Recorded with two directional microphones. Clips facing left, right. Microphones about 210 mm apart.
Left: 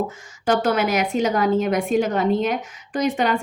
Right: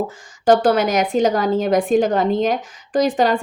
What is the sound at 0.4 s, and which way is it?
A woman's voice, 35° right (ahead or behind).